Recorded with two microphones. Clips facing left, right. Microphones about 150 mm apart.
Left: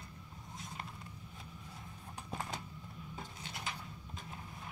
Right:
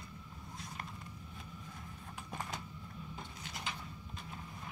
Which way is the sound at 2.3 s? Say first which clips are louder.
Left 1 dB; 10° left (ahead or behind).